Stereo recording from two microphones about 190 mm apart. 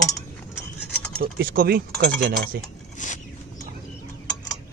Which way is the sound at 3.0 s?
40° left (ahead or behind).